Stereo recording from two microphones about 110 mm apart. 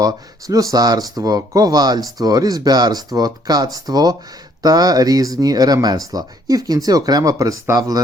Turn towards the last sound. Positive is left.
turn(degrees=-30)  # may be behind; listen again after turning